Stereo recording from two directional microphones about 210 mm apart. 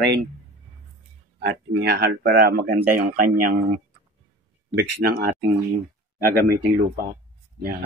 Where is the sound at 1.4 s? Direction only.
50° right (ahead or behind).